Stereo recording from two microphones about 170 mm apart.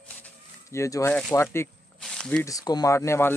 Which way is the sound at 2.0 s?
5° left (ahead or behind).